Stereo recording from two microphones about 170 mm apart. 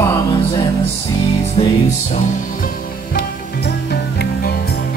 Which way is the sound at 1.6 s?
30° left (ahead or behind).